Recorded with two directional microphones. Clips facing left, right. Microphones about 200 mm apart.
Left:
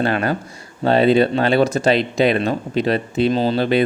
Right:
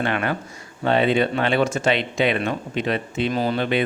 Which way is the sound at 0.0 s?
35° left (ahead or behind).